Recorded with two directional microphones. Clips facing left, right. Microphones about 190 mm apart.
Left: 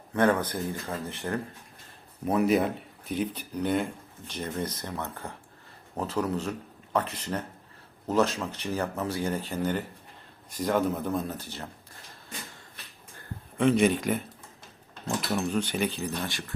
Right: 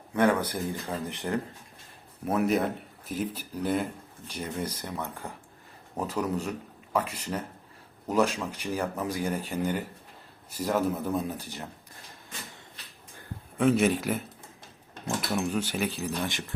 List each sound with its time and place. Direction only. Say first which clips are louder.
0.1 s speech: even; 10° right (ahead or behind)
2.2 s speech: left 2 dB; centre (ahead or behind)
13.1 s a sound: even; 5° right (ahead or behind)
15.0 s speech: even; 10° right (ahead or behind)